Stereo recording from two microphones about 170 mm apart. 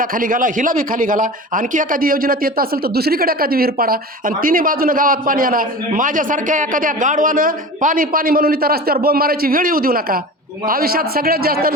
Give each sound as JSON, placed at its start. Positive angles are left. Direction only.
{"t": 0.0, "sound": "speech", "side_deg": -55}